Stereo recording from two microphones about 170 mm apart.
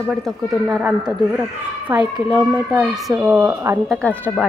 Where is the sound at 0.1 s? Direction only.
Centre (ahead or behind).